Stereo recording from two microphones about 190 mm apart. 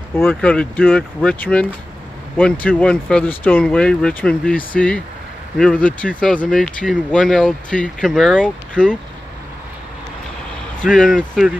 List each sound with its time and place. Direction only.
0.1 s speech: 10° left (ahead or behind)
10.8 s speech: 5° left (ahead or behind)